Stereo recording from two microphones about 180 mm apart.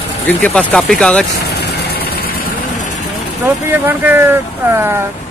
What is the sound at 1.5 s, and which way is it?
Vehicle, 65° left (ahead or behind).